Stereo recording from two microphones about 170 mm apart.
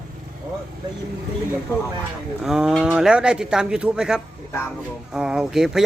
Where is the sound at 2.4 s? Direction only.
5° right (ahead or behind).